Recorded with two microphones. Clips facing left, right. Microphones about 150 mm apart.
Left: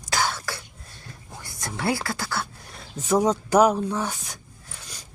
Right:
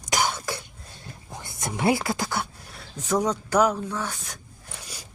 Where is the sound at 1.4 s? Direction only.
20° right (ahead or behind).